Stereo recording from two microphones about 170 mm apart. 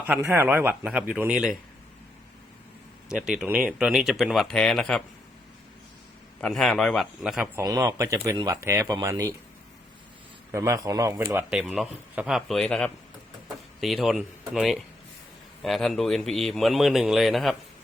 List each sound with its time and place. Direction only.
0.1 s a man's voice: 10° right (ahead or behind)
3.1 s a man's voice: 5° right (ahead or behind)
6.4 s a man's voice: centre (ahead or behind)
7.6 s speech: 20° right (ahead or behind)
10.5 s a man's voice: 20° right (ahead or behind)
11.5 s a man's voice: 5° right (ahead or behind)